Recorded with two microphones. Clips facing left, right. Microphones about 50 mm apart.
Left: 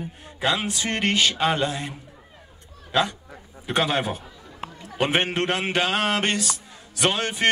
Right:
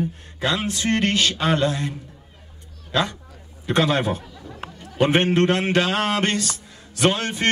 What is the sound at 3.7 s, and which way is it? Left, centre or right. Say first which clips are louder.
A man's voice: right 3 dB; centre.